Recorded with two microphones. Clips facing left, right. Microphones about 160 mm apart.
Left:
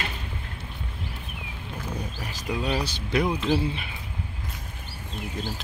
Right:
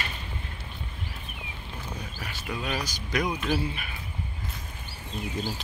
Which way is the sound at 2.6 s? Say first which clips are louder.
Left 5 dB; 30° left (ahead or behind).